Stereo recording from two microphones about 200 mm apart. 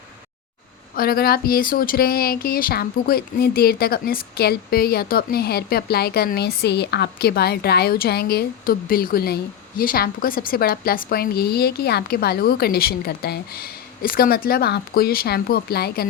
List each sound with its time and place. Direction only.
0.9 s speech: 50° left (ahead or behind)